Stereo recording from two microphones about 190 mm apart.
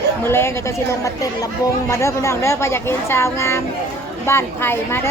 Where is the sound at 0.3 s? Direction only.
15° left (ahead or behind).